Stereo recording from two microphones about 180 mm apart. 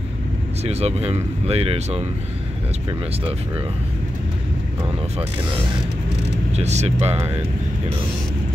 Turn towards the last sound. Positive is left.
turn(degrees=-35)  # may be behind; listen again after turning